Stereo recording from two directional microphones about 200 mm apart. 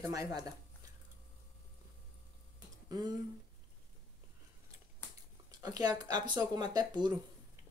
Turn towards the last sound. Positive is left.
turn(degrees=-20)  # may be behind; listen again after turning